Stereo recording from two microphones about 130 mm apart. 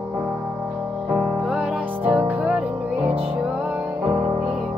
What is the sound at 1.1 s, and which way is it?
Music, 5° right (ahead or behind).